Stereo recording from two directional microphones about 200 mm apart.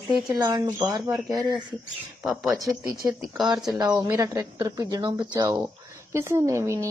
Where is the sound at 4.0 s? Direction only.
15° right (ahead or behind).